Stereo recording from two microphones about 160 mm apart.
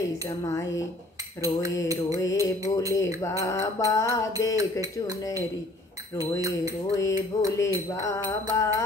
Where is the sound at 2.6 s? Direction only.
20° right (ahead or behind).